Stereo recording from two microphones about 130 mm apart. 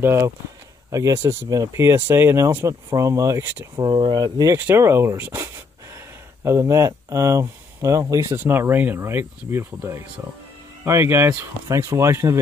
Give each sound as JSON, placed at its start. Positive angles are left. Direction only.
{"t": 0.0, "sound": "speech", "side_deg": -20}
{"t": 3.9, "sound": "speech", "side_deg": -40}
{"t": 4.6, "sound": "speech", "side_deg": -20}